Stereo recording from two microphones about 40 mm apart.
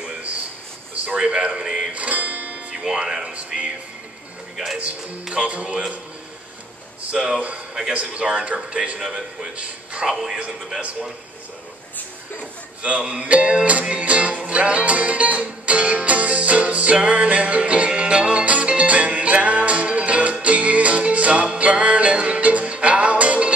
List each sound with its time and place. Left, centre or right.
1.1 s speech: right
2.0 s music: right
2.8 s speech: centre
4.7 s music: right
7.2 s a man's voice: centre
7.9 s speech: right
10.0 s a man's voice: centre
12.8 s music: right